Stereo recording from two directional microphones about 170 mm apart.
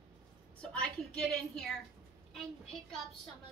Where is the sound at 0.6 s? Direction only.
5° left (ahead or behind).